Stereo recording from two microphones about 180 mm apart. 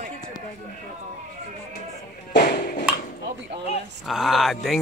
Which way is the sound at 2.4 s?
50° left (ahead or behind).